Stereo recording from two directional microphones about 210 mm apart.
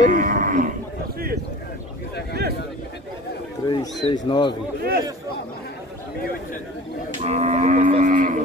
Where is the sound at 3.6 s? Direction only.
20° left (ahead or behind).